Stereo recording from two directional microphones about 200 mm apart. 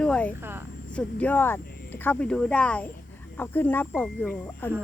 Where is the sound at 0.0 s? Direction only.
5° left (ahead or behind).